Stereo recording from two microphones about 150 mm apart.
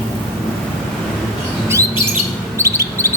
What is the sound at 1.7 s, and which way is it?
Bird, 20° right (ahead or behind).